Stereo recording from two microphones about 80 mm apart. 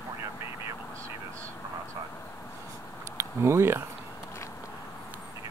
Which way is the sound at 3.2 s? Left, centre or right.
Right.